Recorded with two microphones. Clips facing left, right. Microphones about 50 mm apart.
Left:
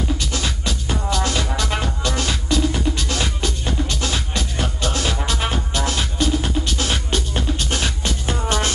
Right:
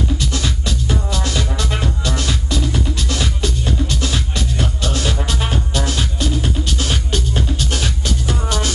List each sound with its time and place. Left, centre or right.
0.3 s music: left